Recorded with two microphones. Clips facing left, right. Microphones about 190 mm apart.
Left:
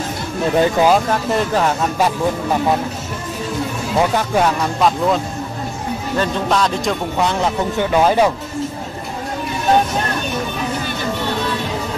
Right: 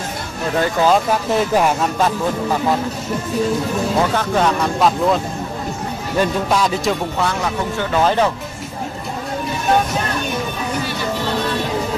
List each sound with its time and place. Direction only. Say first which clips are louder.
0.6 s speech: left 2 dB; 15° left (ahead or behind)
0.9 s speech: even; 5° right (ahead or behind)
4.0 s speech: left 4 dB; 10° left (ahead or behind)
4.7 s speech: even; centre (ahead or behind)
6.1 s speech: right 1 dB; 10° right (ahead or behind)
7.2 s speech: left 2 dB; 20° left (ahead or behind)